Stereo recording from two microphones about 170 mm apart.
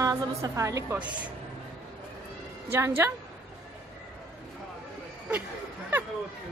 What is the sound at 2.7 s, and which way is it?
Speech, 15° right (ahead or behind).